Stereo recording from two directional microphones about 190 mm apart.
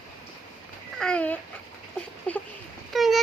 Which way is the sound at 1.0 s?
5° left (ahead or behind).